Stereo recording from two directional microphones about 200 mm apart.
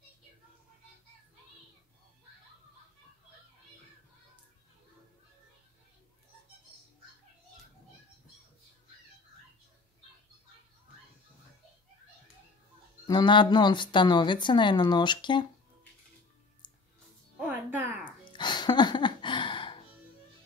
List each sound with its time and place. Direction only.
13.0 s speech: 20° left (ahead or behind)
17.4 s music: 10° right (ahead or behind)
18.2 s a sound: 25° left (ahead or behind)